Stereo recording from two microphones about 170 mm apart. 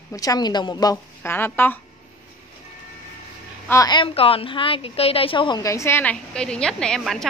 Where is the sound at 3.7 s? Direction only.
25° left (ahead or behind); by 7.2 s centre (ahead or behind).